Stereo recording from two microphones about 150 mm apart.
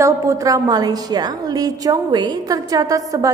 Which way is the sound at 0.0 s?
20° right (ahead or behind).